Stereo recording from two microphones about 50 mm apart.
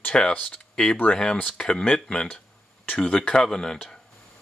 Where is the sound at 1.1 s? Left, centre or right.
Left.